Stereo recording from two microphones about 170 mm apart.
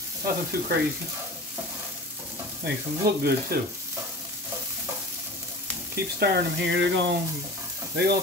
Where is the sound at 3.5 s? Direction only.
60° right (ahead or behind).